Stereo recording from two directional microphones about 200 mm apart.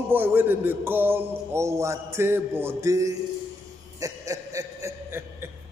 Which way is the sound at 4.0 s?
15° right (ahead or behind).